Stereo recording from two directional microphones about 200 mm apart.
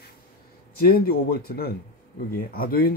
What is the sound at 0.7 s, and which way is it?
Speech, 50° left (ahead or behind).